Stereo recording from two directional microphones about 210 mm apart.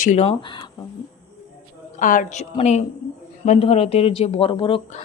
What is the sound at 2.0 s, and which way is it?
A woman's voice, 40° left (ahead or behind).